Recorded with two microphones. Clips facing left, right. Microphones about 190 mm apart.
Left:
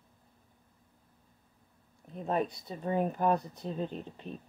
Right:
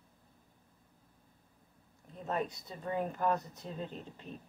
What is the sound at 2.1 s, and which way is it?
Speech, 20° left (ahead or behind).